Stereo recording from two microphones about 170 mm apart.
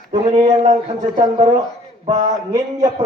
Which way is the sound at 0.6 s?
45° right (ahead or behind).